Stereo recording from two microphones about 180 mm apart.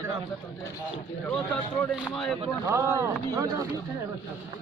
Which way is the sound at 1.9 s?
Centre (ahead or behind).